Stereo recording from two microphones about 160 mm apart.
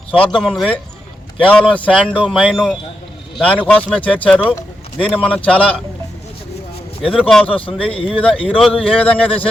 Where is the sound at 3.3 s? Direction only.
10° left (ahead or behind).